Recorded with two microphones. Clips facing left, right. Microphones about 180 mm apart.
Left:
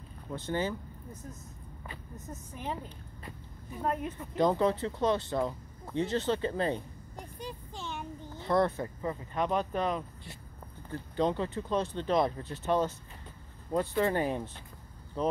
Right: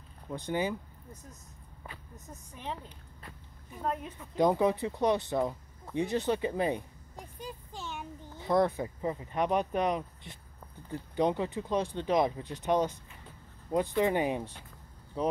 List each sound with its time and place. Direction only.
0.3 s speech: 15° right (ahead or behind)
1.9 s speech: centre (ahead or behind)
3.8 s speech: 5° left (ahead or behind)
4.4 s speech: 15° right (ahead or behind)
7.2 s a sound: centre (ahead or behind)
8.5 s speech: 15° right (ahead or behind)